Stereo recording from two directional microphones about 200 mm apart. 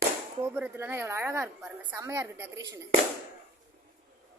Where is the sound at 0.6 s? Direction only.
10° right (ahead or behind).